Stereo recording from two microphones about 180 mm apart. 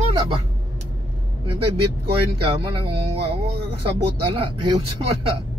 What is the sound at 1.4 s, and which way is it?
Speech, 30° right (ahead or behind).